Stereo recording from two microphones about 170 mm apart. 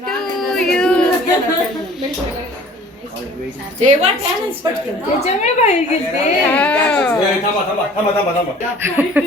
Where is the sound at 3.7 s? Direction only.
45° right (ahead or behind).